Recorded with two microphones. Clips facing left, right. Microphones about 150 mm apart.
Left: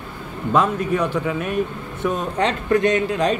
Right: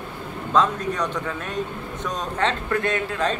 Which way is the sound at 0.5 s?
10° left (ahead or behind).